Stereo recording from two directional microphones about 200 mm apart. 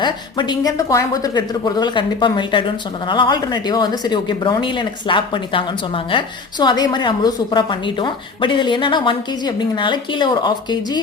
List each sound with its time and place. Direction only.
0.0 s speech: 20° left (ahead or behind)